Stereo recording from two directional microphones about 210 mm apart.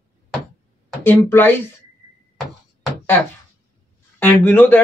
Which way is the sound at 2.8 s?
10° left (ahead or behind).